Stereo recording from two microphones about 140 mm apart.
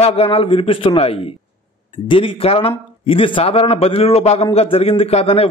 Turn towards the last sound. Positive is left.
turn(degrees=45)  # may be behind; listen again after turning